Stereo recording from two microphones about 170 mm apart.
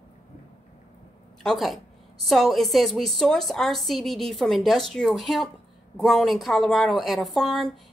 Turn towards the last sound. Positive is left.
turn(degrees=0)  # may be behind; listen again after turning